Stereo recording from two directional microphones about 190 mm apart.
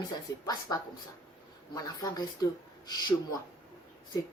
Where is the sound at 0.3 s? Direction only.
20° left (ahead or behind).